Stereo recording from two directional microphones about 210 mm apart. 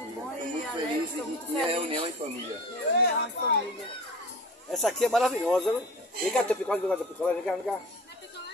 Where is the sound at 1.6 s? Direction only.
25° right (ahead or behind).